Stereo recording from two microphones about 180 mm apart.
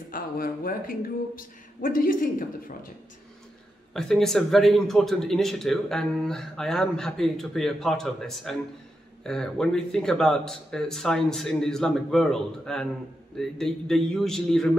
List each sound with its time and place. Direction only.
0.1 s speech: 50° left (ahead or behind)
3.9 s a man's voice: centre (ahead or behind)